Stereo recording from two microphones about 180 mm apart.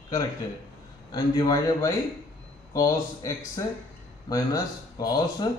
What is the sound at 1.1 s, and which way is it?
A man's voice, 20° left (ahead or behind).